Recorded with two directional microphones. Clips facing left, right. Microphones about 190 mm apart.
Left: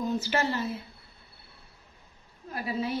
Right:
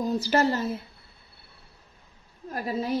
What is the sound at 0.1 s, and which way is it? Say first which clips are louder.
Speech: right 5 dB; 40° right (ahead or behind).